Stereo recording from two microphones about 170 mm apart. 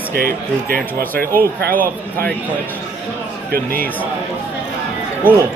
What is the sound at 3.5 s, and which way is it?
Speech, 60° right (ahead or behind).